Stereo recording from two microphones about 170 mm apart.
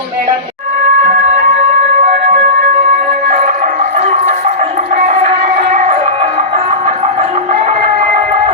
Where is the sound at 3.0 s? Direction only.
50° right (ahead or behind).